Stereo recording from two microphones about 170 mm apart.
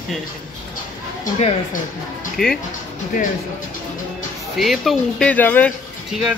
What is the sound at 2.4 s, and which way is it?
Speech, centre (ahead or behind).